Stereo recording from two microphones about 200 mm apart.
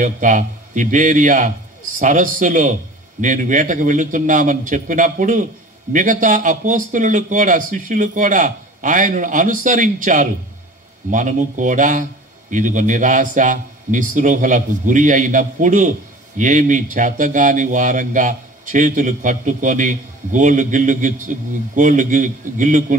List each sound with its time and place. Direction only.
0.0 s speech: 40° right (ahead or behind)